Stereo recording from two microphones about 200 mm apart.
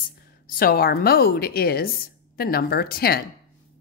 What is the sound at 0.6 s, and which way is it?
A woman's voice, 50° left (ahead or behind).